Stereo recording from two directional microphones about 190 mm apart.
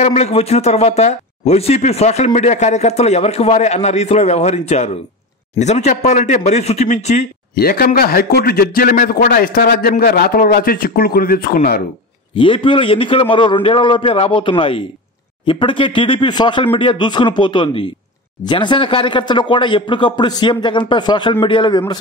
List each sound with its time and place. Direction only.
0.0 s speech: 35° left (ahead or behind)
7.5 s a man's voice: 55° left (ahead or behind)
12.4 s speech: 25° left (ahead or behind)